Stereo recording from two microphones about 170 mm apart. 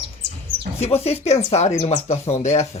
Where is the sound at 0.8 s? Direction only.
40° left (ahead or behind).